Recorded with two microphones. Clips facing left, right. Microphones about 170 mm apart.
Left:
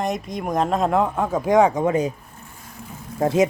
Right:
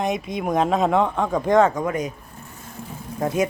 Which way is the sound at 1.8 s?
30° left (ahead or behind).